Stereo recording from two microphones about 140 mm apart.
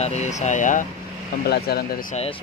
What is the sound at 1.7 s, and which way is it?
Speech, 90° left.